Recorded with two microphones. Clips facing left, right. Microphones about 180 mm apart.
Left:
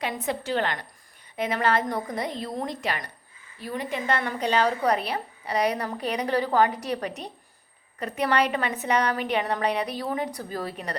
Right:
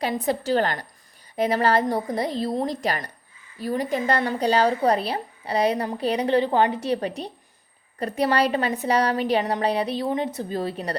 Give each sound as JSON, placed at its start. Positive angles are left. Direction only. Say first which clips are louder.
{"t": 0.0, "sound": "a woman's voice", "louder": "right 5 dB", "side_deg": -35}